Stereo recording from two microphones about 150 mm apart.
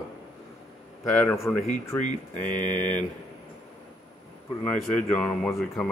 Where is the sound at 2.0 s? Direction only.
55° left (ahead or behind).